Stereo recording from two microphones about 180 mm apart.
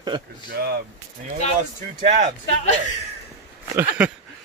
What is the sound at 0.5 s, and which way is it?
Speech, 60° right (ahead or behind).